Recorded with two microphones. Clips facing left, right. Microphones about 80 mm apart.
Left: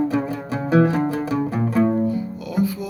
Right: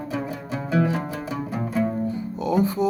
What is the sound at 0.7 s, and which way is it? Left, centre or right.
Music, left.